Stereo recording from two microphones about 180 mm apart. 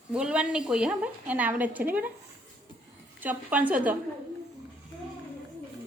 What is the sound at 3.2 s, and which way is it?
Speech, 10° right (ahead or behind).